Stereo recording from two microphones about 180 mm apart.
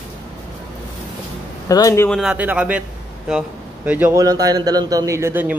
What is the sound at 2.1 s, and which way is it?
Speech, 5° right (ahead or behind).